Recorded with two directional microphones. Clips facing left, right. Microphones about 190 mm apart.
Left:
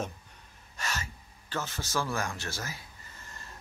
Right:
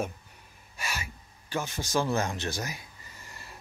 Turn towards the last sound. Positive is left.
turn(degrees=-10)  # may be behind; listen again after turning